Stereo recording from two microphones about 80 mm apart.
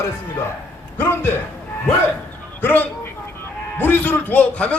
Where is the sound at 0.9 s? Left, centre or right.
Left.